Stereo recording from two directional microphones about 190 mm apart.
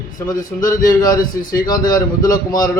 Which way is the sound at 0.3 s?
20° left (ahead or behind).